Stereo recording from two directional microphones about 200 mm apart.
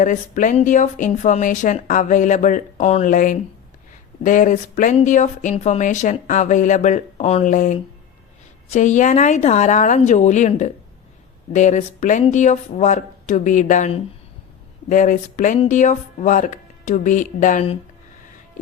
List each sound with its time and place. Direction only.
0.0 s speech: 40° left (ahead or behind)